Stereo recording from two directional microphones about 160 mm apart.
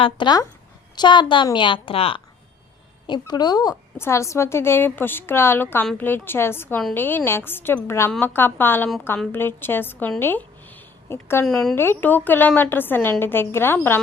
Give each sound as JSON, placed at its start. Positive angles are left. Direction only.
{"t": 0.0, "sound": "a woman's voice", "side_deg": 30}
{"t": 3.1, "sound": "a woman's voice", "side_deg": 25}
{"t": 11.4, "sound": "speech", "side_deg": 5}
{"t": 11.7, "sound": "a woman's voice", "side_deg": 15}